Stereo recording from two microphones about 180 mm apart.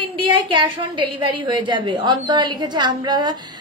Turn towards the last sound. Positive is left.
turn(degrees=-25)  # may be behind; listen again after turning